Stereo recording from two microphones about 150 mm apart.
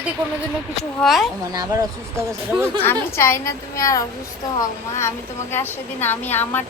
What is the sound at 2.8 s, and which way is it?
A woman's voice, 15° left (ahead or behind).